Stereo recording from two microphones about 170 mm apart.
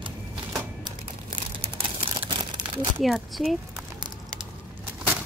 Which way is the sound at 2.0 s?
30° right (ahead or behind).